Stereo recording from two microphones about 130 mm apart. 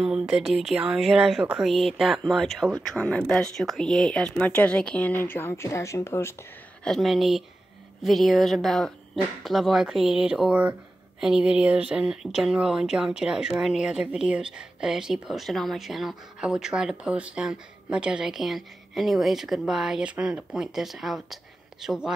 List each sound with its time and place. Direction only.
0.0 s speech: 5° right (ahead or behind); by 6.3 s 20° left (ahead or behind)
6.8 s speech: centre (ahead or behind)